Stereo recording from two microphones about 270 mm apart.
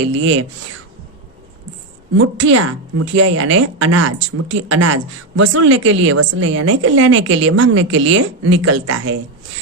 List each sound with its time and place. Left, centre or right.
0.1 s a woman's voice: right
2.1 s a woman's voice: right
5.4 s a woman's voice: right